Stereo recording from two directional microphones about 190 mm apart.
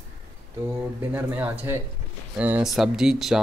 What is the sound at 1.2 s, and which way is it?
Speech, 10° right (ahead or behind).